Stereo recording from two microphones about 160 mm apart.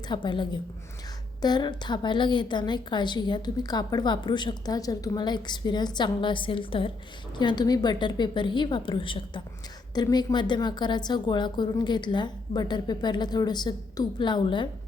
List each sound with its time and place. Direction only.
0.1 s a woman's voice: 30° left (ahead or behind)